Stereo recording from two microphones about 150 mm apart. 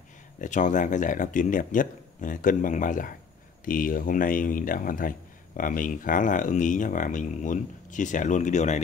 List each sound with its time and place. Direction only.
0.4 s speech: 55° left (ahead or behind)